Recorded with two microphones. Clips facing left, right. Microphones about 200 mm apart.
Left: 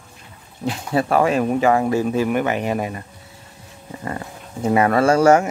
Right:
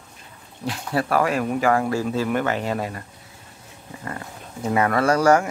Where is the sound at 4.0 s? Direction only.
25° left (ahead or behind).